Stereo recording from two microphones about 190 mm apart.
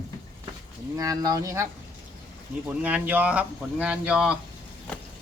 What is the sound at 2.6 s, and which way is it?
Speech, 10° right (ahead or behind).